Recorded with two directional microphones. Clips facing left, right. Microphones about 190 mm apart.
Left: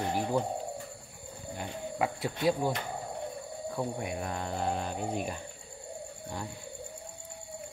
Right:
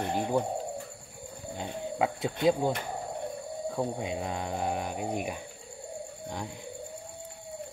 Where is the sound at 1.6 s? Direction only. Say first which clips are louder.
Right 3 dB; 20° right (ahead or behind).